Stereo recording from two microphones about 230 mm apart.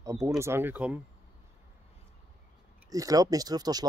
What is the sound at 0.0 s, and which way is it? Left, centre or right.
Speech, centre.